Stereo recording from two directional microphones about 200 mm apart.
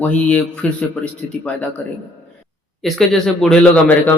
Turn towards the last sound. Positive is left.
turn(degrees=5)  # may be behind; listen again after turning